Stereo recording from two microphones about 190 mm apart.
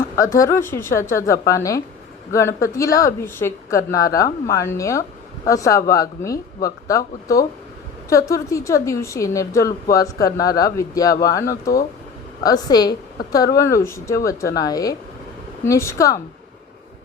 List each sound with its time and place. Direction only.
0.2 s a woman's voice: 15° left (ahead or behind)